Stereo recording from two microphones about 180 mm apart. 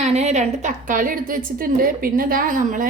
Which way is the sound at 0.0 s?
40° right (ahead or behind).